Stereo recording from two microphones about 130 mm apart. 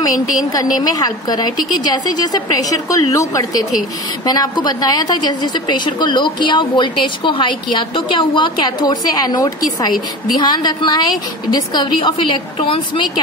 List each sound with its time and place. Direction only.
0.7 s a woman's voice: 30° left (ahead or behind)